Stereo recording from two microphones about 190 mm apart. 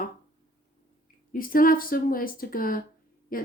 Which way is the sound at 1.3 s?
45° left (ahead or behind).